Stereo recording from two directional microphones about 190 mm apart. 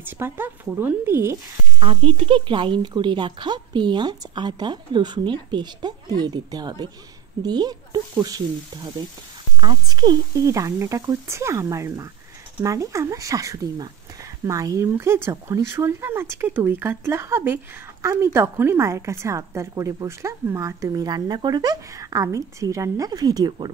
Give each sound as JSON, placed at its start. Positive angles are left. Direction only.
{"t": 0.0, "sound": "a woman's voice", "side_deg": -10}
{"t": 1.8, "sound": "speech", "side_deg": -30}
{"t": 9.6, "sound": "a woman's voice", "side_deg": -20}